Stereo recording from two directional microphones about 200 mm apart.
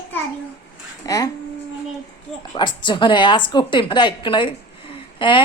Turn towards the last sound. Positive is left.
turn(degrees=25)  # may be behind; listen again after turning